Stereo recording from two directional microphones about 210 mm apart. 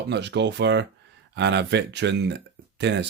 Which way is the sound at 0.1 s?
55° right (ahead or behind).